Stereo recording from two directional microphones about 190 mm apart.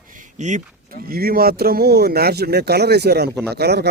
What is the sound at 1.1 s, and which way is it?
Speech, 50° right (ahead or behind).